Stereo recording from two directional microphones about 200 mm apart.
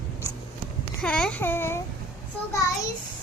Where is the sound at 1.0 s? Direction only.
5° left (ahead or behind).